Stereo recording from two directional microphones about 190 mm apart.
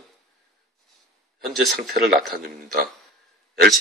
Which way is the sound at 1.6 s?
55° right (ahead or behind).